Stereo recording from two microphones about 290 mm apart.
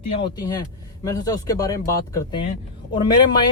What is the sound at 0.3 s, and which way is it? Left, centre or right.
Speech, centre.